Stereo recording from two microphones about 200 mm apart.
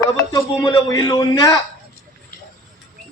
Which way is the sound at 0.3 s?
20° left (ahead or behind).